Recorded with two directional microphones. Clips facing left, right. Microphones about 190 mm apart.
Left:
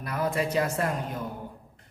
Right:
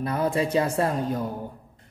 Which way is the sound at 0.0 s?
30° right (ahead or behind).